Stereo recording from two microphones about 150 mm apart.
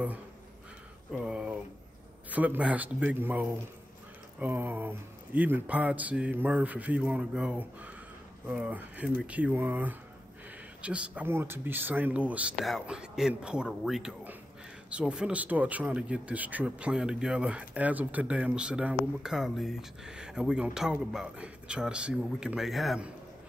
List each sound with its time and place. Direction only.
1.1 s speech: 5° right (ahead or behind)